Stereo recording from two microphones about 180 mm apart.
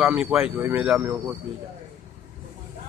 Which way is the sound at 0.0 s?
5° right (ahead or behind).